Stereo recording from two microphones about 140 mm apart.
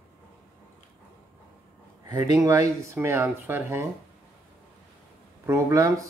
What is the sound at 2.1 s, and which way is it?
Speech, 20° right (ahead or behind).